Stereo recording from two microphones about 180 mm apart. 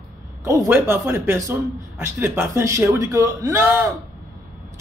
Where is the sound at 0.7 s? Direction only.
15° right (ahead or behind).